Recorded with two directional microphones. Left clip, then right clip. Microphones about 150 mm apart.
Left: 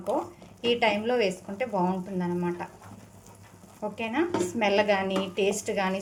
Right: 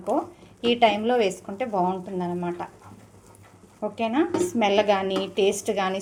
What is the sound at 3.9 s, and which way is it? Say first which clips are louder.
A woman's voice: right 4 dB; 25° right (ahead or behind).